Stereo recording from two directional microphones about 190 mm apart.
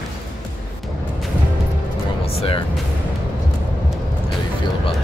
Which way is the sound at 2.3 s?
30° left (ahead or behind).